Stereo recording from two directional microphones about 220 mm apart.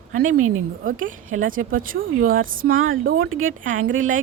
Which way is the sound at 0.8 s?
35° right (ahead or behind).